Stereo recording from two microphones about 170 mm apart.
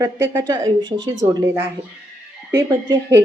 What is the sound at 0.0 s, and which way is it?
A woman's voice, 15° right (ahead or behind).